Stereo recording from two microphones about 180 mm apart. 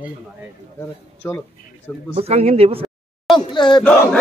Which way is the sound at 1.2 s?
10° left (ahead or behind).